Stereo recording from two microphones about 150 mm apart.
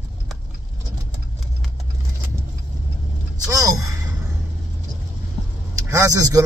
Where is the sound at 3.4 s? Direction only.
25° right (ahead or behind).